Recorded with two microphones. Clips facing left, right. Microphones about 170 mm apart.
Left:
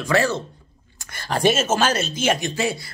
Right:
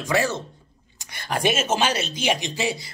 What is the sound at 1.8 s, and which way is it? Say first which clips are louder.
Speech: left 3 dB; 45° left (ahead or behind).